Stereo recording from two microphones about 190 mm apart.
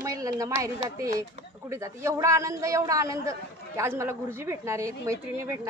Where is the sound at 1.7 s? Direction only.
15° right (ahead or behind).